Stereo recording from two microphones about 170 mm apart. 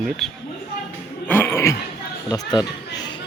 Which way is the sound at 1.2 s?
10° left (ahead or behind).